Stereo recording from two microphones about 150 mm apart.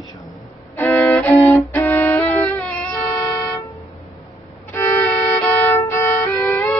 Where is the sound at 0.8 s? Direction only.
20° left (ahead or behind).